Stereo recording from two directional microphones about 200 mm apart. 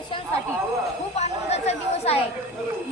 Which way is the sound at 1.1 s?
35° left (ahead or behind).